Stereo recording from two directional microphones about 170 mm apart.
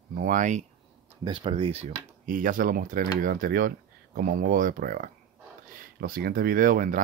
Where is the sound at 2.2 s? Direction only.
50° right (ahead or behind).